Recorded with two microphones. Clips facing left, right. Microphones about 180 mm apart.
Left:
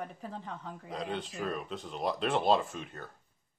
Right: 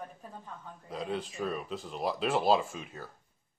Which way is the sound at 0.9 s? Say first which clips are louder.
Right 2 dB; centre (ahead or behind).